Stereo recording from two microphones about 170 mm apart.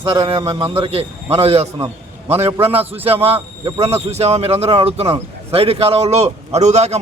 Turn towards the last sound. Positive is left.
turn(degrees=-40)  # may be behind; listen again after turning